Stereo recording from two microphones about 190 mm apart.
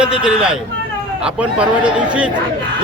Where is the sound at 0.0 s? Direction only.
5° right (ahead or behind).